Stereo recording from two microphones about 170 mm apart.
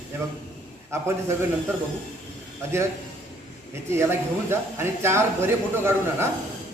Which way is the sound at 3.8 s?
15° right (ahead or behind).